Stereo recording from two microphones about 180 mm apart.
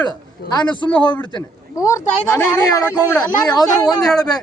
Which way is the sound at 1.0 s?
25° left (ahead or behind).